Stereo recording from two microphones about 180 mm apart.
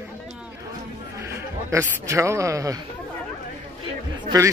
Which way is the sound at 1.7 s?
15° right (ahead or behind).